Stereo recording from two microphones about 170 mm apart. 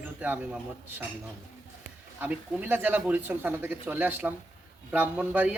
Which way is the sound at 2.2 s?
10° right (ahead or behind).